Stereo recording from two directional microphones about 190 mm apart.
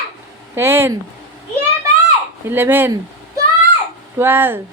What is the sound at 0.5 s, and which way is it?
Speech, 10° right (ahead or behind).